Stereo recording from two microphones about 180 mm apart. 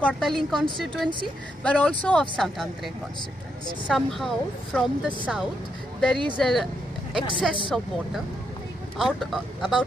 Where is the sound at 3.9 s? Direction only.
Centre (ahead or behind).